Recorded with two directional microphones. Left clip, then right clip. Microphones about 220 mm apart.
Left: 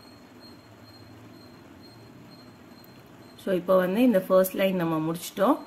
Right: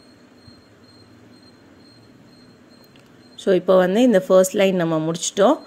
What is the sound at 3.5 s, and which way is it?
Speech, 35° right (ahead or behind).